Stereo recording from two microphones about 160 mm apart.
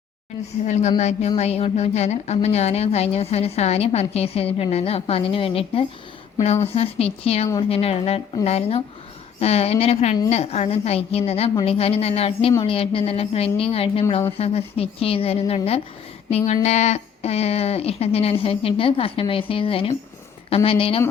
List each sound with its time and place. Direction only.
0.7 s a woman's voice: 45° left (ahead or behind)